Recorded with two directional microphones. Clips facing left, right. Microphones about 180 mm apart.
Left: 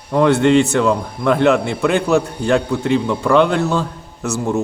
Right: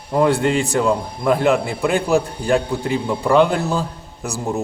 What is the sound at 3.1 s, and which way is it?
Speech, 5° right (ahead or behind).